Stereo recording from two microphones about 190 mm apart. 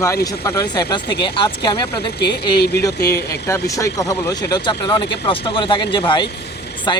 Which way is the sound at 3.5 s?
15° left (ahead or behind).